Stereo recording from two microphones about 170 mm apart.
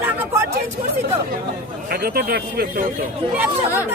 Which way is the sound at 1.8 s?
65° right (ahead or behind).